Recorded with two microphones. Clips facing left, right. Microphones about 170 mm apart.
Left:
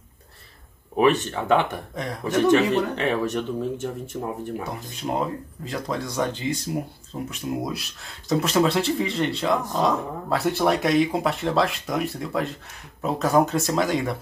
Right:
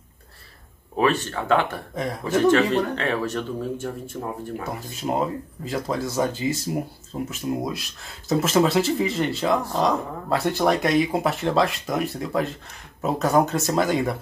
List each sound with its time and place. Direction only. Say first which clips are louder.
0.9 s speech: left 2 dB; 15° left (ahead or behind)
4.6 s speech: right 1 dB; centre (ahead or behind)